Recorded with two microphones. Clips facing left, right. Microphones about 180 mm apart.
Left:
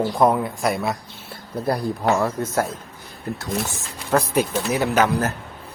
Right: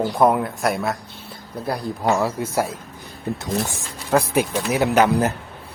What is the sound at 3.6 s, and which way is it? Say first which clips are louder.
Speech: right 1 dB; 10° right (ahead or behind).